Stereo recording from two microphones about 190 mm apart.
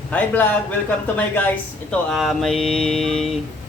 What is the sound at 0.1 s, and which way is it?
A man's voice, 10° left (ahead or behind).